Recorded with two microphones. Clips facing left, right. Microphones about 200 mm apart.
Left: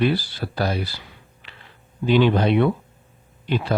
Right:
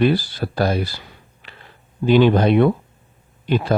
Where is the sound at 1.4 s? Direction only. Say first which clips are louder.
Right 3 dB; 45° right (ahead or behind).